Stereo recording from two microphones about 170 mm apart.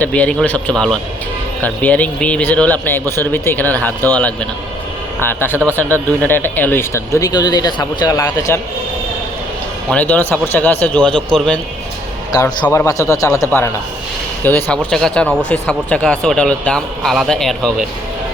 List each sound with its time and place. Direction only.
0.0 s speech: 10° left (ahead or behind)
5.6 s speech: 10° left (ahead or behind)
9.9 s speech: 10° left (ahead or behind)
12.6 s speech: 15° left (ahead or behind)